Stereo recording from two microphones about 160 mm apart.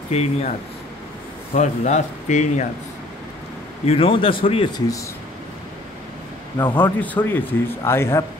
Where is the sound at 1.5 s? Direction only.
50° left (ahead or behind).